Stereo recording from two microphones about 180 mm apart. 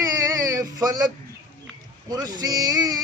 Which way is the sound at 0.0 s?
20° right (ahead or behind).